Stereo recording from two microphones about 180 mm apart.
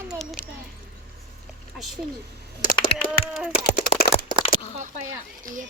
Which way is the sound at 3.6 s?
60° left (ahead or behind).